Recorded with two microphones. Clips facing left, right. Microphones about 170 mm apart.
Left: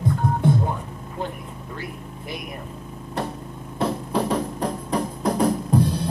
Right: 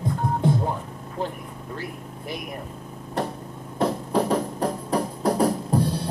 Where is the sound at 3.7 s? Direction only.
40° right (ahead or behind).